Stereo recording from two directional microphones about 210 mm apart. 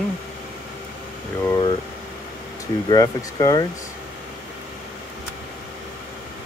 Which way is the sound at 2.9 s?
15° left (ahead or behind).